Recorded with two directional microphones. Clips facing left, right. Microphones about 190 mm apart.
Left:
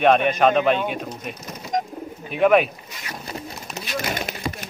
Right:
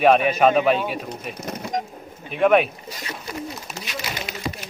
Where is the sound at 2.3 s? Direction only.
Centre (ahead or behind).